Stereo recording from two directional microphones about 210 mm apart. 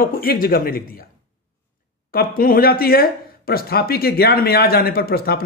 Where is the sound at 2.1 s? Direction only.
45° left (ahead or behind).